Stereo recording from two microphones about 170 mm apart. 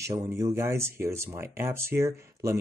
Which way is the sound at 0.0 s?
15° right (ahead or behind).